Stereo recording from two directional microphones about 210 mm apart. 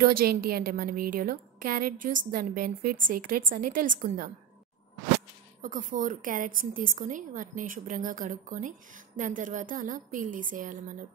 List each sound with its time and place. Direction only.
0.0 s a woman's voice: 45° right (ahead or behind)
5.6 s a woman's voice: 40° right (ahead or behind)